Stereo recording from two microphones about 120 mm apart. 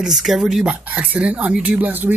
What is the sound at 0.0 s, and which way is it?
Speech, 5° right (ahead or behind).